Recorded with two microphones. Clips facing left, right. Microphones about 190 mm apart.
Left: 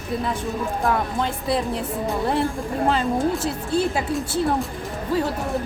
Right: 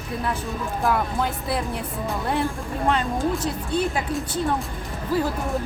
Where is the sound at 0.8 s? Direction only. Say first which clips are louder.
Right 1 dB; 5° right (ahead or behind).